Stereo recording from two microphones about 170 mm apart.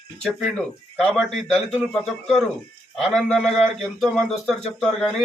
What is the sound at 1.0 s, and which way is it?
A man's voice, centre (ahead or behind).